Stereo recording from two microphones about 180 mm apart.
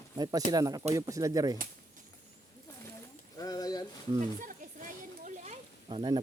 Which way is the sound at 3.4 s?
20° left (ahead or behind).